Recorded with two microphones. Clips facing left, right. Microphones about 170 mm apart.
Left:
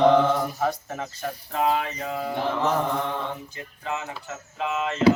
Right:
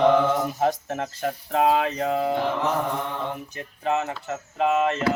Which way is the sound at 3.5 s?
60° right (ahead or behind).